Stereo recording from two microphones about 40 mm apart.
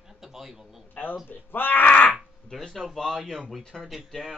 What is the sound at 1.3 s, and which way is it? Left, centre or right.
Speech, left.